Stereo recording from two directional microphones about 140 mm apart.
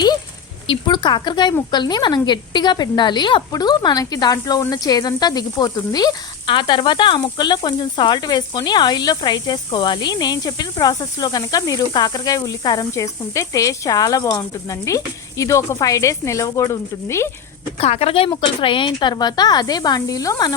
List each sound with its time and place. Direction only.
0.7 s a woman's voice: 35° left (ahead or behind)
17.7 s a woman's voice: 45° left (ahead or behind); by 20.5 s 25° left (ahead or behind)